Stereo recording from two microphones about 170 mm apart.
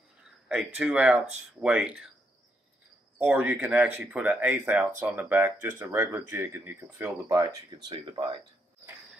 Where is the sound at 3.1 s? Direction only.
10° right (ahead or behind); by 8.3 s 25° right (ahead or behind).